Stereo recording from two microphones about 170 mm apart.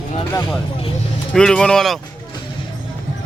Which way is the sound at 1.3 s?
5° left (ahead or behind).